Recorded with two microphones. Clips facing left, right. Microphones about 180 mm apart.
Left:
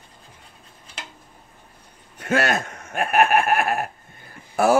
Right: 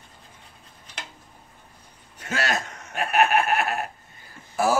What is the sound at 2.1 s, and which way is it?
Speech, 55° left (ahead or behind).